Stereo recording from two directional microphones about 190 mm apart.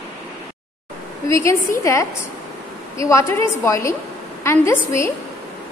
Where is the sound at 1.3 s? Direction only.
15° left (ahead or behind).